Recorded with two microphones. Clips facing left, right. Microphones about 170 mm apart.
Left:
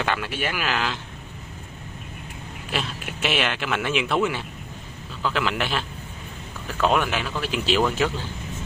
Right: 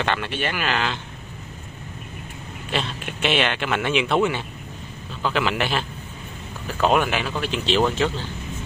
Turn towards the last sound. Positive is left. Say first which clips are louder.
# right 1 dB
turn(degrees=5)  # may be behind; listen again after turning